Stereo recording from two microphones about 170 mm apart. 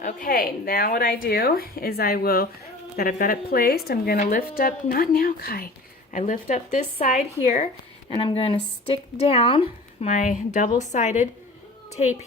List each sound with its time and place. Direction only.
0.0 s a woman's voice: 55° left (ahead or behind)
6.1 s speech: 45° left (ahead or behind)
8.1 s speech: 30° left (ahead or behind)
10.1 s speech: 45° left (ahead or behind)